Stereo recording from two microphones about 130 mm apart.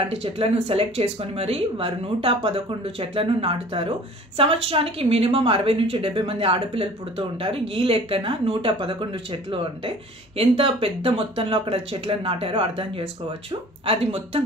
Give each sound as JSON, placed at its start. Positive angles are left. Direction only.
{"t": 0.0, "sound": "speech", "side_deg": -45}